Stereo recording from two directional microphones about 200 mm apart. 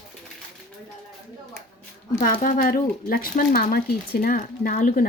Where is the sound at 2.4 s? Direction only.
40° left (ahead or behind).